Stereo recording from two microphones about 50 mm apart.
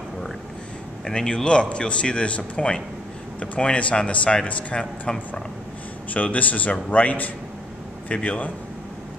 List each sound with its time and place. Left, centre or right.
1.0 s speech: centre
6.1 s a man's voice: left